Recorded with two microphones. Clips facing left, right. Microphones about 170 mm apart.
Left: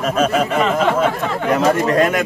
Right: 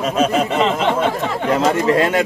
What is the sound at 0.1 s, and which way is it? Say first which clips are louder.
Speech: left 1 dB; 20° right (ahead or behind).